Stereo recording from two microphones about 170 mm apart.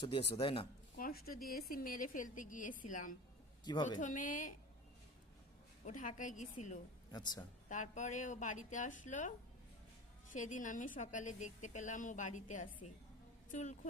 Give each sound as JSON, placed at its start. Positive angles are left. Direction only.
{"t": 0.0, "sound": "speech", "side_deg": 30}
{"t": 0.9, "sound": "a woman's voice", "side_deg": 60}
{"t": 3.6, "sound": "a woman's voice", "side_deg": 25}
{"t": 4.0, "sound": "a woman's voice", "side_deg": 50}
{"t": 5.8, "sound": "a woman's voice", "side_deg": 50}
{"t": 7.1, "sound": "a woman's voice", "side_deg": 25}
{"t": 7.7, "sound": "a woman's voice", "side_deg": 45}